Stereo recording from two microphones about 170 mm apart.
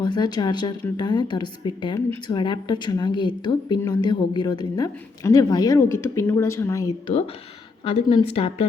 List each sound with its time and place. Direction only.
0.0 s a woman's voice: 25° left (ahead or behind)
7.9 s a woman's voice: 30° left (ahead or behind)